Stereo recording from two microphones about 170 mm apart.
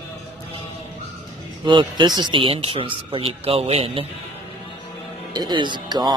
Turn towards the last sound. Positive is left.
turn(degrees=-25)  # may be behind; listen again after turning